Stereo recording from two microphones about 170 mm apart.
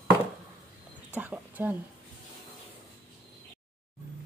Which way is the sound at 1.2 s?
10° right (ahead or behind).